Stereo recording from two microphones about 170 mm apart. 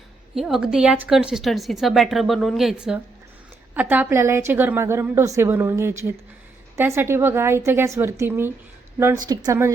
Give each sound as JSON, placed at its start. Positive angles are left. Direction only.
{"t": 0.3, "sound": "a woman's voice", "side_deg": 0}